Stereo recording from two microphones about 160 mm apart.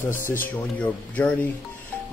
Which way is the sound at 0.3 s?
10° left (ahead or behind).